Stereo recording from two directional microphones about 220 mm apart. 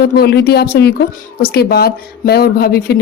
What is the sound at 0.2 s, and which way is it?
Speech, 50° left (ahead or behind).